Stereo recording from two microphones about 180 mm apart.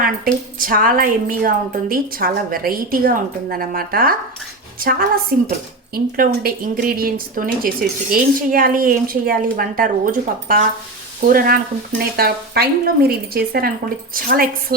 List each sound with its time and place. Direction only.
0.6 s a woman's voice: 50° right (ahead or behind)